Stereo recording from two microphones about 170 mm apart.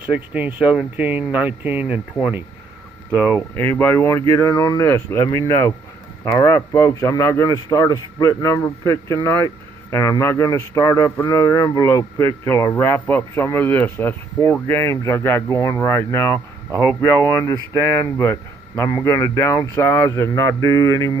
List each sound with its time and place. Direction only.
0.1 s speech: 10° right (ahead or behind)
3.3 s a man's voice: 15° left (ahead or behind)
17.5 s a man's voice: 10° left (ahead or behind)